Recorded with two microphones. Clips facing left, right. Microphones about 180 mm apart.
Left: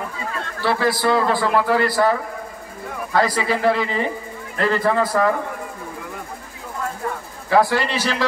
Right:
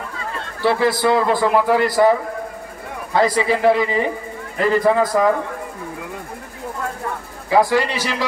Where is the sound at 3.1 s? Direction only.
20° right (ahead or behind).